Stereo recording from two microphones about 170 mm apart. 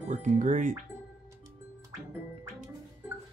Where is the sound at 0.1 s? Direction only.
45° right (ahead or behind).